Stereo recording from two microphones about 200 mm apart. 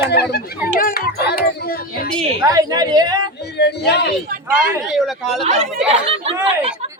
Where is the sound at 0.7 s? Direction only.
50° left (ahead or behind).